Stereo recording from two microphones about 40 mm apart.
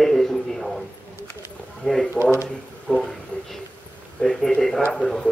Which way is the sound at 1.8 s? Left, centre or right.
Centre.